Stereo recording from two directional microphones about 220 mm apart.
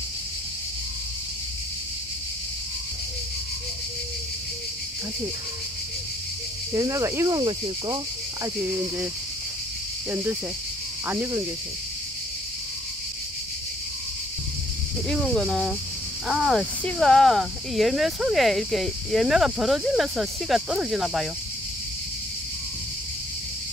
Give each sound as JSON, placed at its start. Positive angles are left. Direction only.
{"t": 6.7, "sound": "speech", "side_deg": -15}
{"t": 11.1, "sound": "speech", "side_deg": -10}
{"t": 15.0, "sound": "speech", "side_deg": 0}